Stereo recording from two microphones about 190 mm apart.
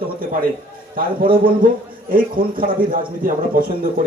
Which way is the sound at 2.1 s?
50° right (ahead or behind).